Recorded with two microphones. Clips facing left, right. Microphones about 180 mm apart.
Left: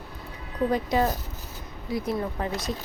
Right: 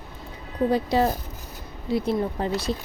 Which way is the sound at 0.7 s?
30° right (ahead or behind).